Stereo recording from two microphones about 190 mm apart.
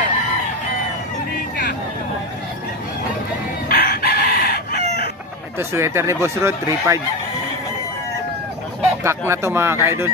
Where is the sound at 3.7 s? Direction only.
60° left (ahead or behind).